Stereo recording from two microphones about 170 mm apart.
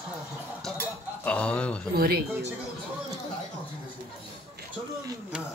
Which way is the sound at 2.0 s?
65° right (ahead or behind).